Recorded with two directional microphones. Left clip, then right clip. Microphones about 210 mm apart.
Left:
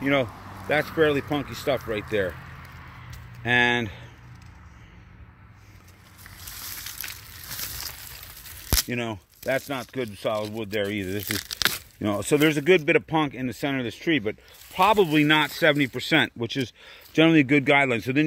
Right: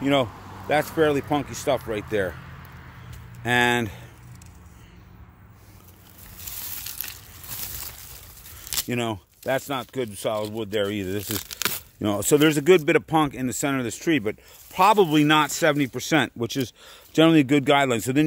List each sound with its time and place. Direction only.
0.0 s speech: 5° right (ahead or behind)
3.4 s speech: 10° right (ahead or behind)
7.0 s a sound: 25° right (ahead or behind)
8.6 s speech: 10° right (ahead or behind)
11.3 s speech: 15° right (ahead or behind)